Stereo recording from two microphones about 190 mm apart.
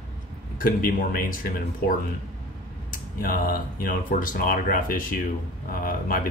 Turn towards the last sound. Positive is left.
turn(degrees=50)  # may be behind; listen again after turning